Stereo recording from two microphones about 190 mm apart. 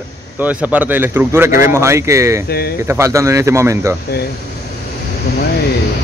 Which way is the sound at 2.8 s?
15° right (ahead or behind).